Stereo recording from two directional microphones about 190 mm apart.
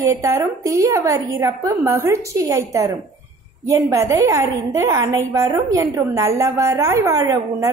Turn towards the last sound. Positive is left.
turn(degrees=-15)  # may be behind; listen again after turning